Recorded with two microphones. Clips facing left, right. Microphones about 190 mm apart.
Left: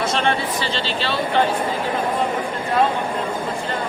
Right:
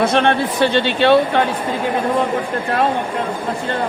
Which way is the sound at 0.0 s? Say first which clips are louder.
Right 6 dB; 60° right (ahead or behind).